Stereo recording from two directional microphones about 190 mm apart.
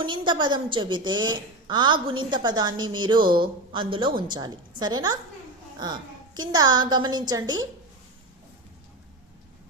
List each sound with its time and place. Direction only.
0.0 s a woman's voice: 25° right (ahead or behind)